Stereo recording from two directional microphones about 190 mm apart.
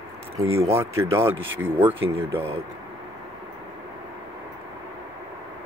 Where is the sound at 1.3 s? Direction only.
90° right.